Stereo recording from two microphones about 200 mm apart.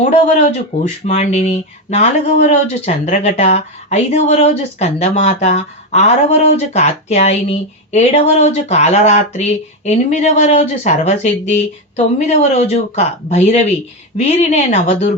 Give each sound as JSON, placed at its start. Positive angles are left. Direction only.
{"t": 0.0, "sound": "speech", "side_deg": 35}